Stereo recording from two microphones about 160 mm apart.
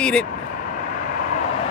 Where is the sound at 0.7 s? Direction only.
55° left (ahead or behind).